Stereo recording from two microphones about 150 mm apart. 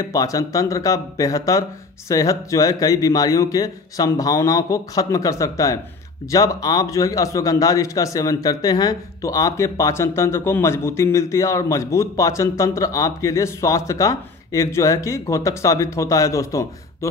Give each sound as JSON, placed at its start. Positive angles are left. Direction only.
{"t": 0.1, "sound": "a man's voice", "side_deg": 25}